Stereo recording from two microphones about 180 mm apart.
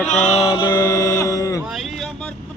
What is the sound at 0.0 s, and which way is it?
Music, 5° left (ahead or behind).